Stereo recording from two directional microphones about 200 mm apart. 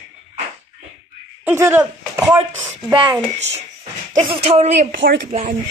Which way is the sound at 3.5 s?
30° right (ahead or behind).